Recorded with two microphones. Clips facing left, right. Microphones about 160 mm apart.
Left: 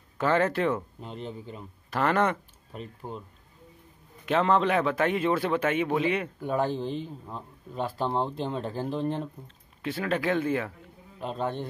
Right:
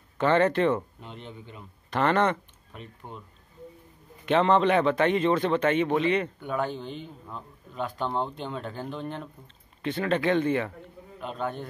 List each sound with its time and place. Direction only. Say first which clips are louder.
0.2 s a man's voice: right 3 dB; 5° left (ahead or behind)
1.0 s a man's voice: left 5 dB; 35° left (ahead or behind)
1.9 s a man's voice: right 1 dB; 5° left (ahead or behind)
2.7 s speech: left 4 dB; 35° left (ahead or behind)
4.3 s a man's voice: right 2 dB; centre (ahead or behind)
6.4 s a man's voice: left 3 dB; 35° left (ahead or behind)
9.8 s a man's voice: right 2 dB; 5° left (ahead or behind)
11.1 s a man's voice: left 1 dB; 35° left (ahead or behind)